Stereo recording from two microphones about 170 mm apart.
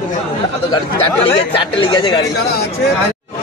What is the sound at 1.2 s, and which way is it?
Speech, 30° left (ahead or behind).